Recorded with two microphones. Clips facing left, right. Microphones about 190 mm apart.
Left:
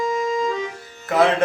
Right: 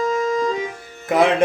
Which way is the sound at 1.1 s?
15° right (ahead or behind).